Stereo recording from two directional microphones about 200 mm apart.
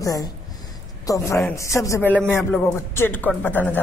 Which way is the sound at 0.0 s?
15° left (ahead or behind).